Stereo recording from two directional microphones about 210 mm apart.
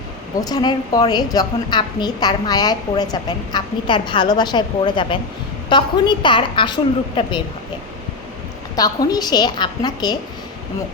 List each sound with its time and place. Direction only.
0.4 s a woman's voice: 20° left (ahead or behind)
8.7 s a woman's voice: 15° left (ahead or behind)